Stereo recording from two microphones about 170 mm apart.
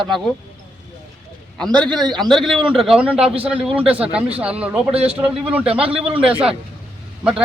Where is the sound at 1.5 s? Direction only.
5° left (ahead or behind).